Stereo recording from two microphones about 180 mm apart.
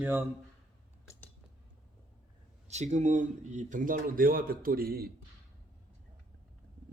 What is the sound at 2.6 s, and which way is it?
Speech, 40° right (ahead or behind).